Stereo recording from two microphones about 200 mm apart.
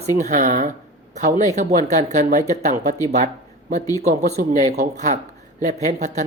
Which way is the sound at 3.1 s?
40° right (ahead or behind).